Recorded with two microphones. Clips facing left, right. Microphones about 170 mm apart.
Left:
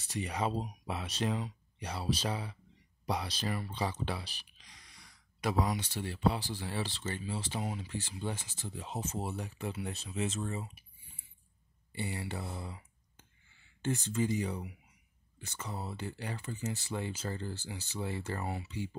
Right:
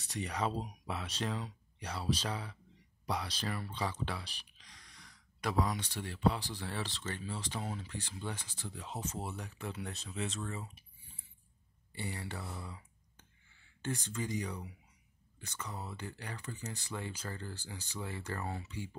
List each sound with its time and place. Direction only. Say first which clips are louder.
0.2 s speech: left 2 dB; 10° left (ahead or behind)
10.6 s typing: left 3 dB; 10° left (ahead or behind)
11.9 s speech: left 4 dB; 15° left (ahead or behind)
13.8 s speech: left 6 dB; 25° left (ahead or behind)